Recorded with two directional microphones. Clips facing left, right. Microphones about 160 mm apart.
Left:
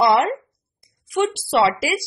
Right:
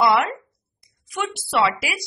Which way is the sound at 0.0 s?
30° left (ahead or behind).